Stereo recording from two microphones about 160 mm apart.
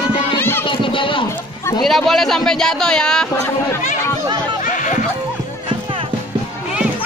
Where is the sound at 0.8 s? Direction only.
30° left (ahead or behind).